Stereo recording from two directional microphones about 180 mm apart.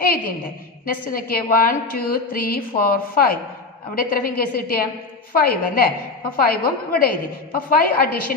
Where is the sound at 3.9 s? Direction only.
50° left (ahead or behind).